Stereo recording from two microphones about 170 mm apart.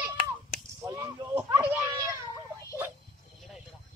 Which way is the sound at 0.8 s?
20° right (ahead or behind).